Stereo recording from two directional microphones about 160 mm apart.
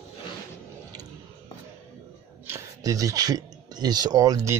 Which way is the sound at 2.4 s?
15° right (ahead or behind).